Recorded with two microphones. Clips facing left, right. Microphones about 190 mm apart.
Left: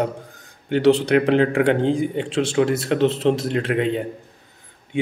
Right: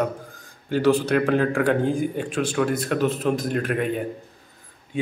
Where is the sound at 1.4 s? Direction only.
20° left (ahead or behind).